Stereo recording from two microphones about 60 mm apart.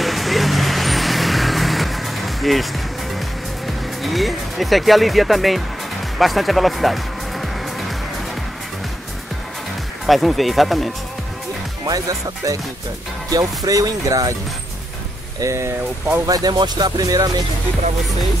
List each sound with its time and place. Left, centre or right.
0.0 s vehicle: centre
3.6 s speech: centre
10.0 s speech: centre
11.9 s speech: right
13.3 s speech: right
15.4 s speech: right
16.3 s speech: right